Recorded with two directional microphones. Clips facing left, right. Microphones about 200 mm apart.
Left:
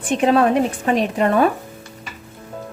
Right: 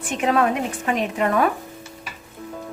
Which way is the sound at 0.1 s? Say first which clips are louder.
Left 5 dB; 30° left (ahead or behind).